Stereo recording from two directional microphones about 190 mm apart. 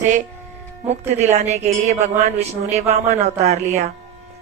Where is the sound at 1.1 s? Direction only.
35° right (ahead or behind).